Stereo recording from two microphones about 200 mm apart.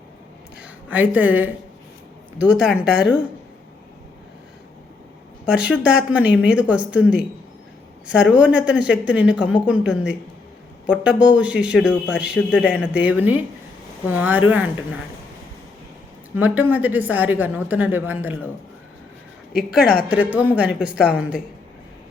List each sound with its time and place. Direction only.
0.6 s a woman's voice: 10° right (ahead or behind)
5.5 s a woman's voice: 5° right (ahead or behind)
16.3 s a woman's voice: 10° right (ahead or behind)
20.1 s a woman's voice: 5° right (ahead or behind)